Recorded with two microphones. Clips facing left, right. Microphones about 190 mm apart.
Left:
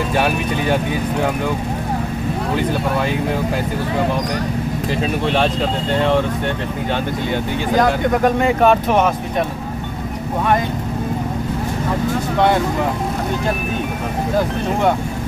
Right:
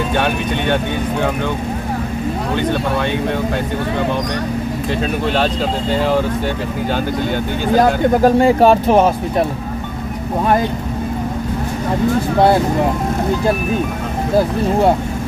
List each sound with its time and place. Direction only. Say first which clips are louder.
5.3 s speech: right 1 dB; centre (ahead or behind)
7.7 s speech: right 3 dB; 35° right (ahead or behind)